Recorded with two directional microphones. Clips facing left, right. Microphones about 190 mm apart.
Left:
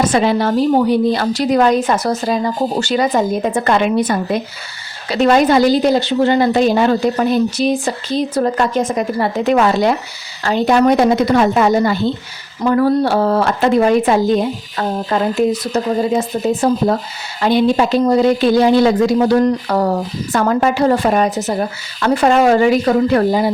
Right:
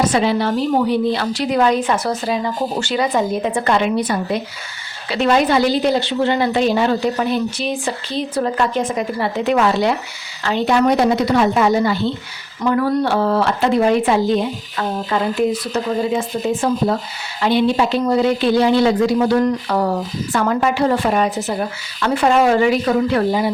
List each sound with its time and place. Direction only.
0.0 s speech: 50° left (ahead or behind)